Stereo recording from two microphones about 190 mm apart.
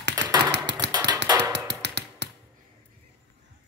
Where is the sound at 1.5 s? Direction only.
65° right (ahead or behind).